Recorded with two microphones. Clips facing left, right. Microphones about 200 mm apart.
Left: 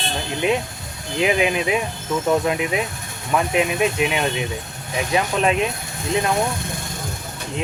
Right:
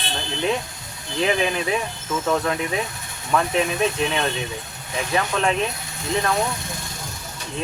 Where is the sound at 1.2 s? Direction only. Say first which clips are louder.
Left 2 dB; 15° left (ahead or behind).